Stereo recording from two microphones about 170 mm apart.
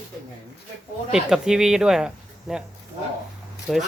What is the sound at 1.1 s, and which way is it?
Speech, 5° right (ahead or behind).